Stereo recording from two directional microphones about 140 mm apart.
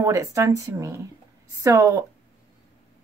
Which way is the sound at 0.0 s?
20° right (ahead or behind).